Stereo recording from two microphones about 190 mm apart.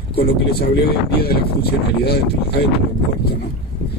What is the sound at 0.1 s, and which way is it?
A man's voice, 55° left (ahead or behind).